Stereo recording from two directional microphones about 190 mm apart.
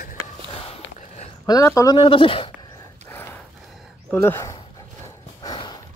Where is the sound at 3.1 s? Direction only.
15° left (ahead or behind).